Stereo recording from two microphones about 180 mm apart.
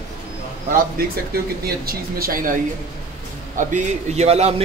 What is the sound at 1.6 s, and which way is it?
Speech, 55° right (ahead or behind).